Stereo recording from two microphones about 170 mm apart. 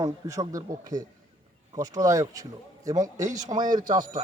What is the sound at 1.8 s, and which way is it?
A man's voice, 20° right (ahead or behind).